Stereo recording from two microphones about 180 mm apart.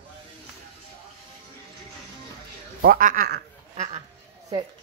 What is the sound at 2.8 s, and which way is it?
Speech, 50° right (ahead or behind).